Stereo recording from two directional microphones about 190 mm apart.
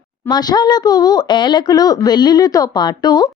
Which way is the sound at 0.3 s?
20° left (ahead or behind).